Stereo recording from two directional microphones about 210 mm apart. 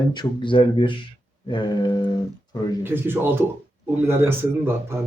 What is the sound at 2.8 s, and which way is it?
Speech, 10° right (ahead or behind).